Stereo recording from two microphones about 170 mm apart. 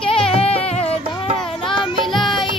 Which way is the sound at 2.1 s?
Centre (ahead or behind).